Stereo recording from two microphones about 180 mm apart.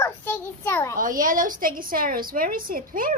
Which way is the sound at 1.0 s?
50° right (ahead or behind).